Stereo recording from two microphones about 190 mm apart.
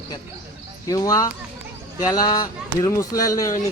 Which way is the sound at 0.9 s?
20° left (ahead or behind).